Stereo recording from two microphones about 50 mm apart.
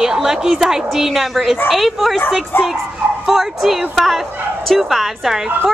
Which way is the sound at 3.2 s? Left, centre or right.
Centre.